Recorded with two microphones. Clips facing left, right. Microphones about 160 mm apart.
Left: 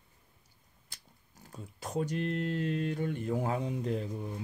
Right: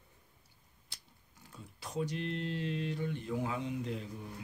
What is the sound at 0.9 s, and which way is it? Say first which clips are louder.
Speech: left 2 dB; 45° left (ahead or behind).